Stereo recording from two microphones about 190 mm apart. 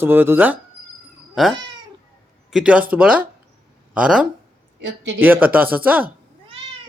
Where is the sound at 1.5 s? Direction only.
25° right (ahead or behind).